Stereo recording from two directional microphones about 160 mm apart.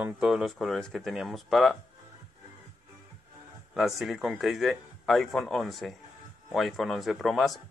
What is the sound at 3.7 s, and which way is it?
Speech, centre (ahead or behind).